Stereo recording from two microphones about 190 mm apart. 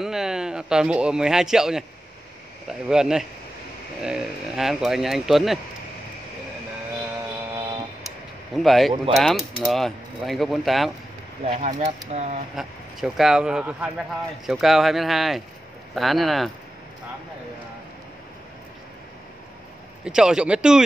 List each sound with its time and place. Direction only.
0.0 s a man's voice: 5° right (ahead or behind)
2.9 s speech: 5° right (ahead or behind)
8.5 s speech: centre (ahead or behind)
11.4 s speech: 35° right (ahead or behind)
12.5 s speech: centre (ahead or behind)
20.1 s speech: 5° right (ahead or behind)